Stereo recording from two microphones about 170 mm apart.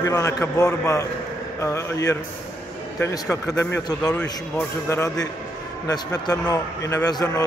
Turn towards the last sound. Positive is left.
turn(degrees=20)  # may be behind; listen again after turning